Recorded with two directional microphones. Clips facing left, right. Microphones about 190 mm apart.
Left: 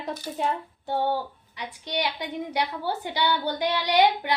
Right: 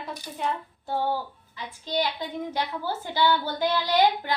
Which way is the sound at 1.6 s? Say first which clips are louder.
Right 1 dB; 15° left (ahead or behind).